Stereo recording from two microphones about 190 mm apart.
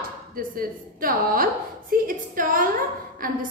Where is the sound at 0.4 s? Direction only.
50° right (ahead or behind).